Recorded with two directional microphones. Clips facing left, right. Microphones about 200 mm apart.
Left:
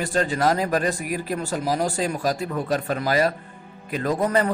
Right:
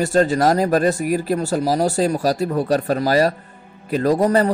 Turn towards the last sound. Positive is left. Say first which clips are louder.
# right 6 dB
turn(degrees=-35)  # may be behind; listen again after turning